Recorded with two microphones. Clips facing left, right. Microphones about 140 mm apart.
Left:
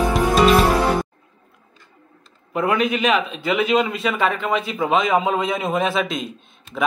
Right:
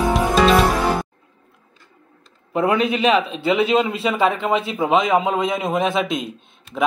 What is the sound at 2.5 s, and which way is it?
A man's voice, 30° right (ahead or behind).